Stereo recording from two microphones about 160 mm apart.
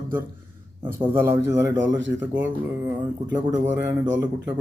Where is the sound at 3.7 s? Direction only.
15° right (ahead or behind).